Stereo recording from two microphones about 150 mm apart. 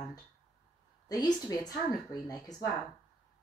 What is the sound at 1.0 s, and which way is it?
Speech, 25° left (ahead or behind).